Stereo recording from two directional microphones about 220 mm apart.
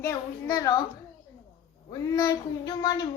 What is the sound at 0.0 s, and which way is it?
Speech, 15° left (ahead or behind).